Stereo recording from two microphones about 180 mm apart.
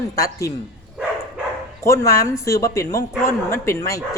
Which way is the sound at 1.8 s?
15° left (ahead or behind).